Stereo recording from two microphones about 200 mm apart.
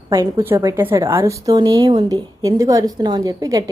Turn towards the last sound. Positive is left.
turn(degrees=-20)  # may be behind; listen again after turning